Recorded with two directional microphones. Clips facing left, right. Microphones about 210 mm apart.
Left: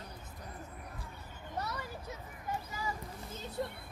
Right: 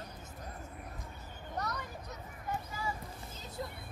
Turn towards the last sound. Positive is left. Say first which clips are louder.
# left 4 dB
turn(degrees=60)  # may be behind; listen again after turning